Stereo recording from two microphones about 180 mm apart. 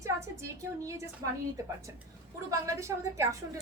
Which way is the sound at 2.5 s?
15° right (ahead or behind).